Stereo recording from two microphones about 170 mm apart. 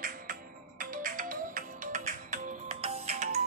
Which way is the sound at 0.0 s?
55° right (ahead or behind).